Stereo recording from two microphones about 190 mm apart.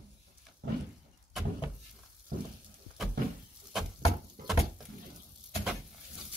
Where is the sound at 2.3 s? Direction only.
45° right (ahead or behind).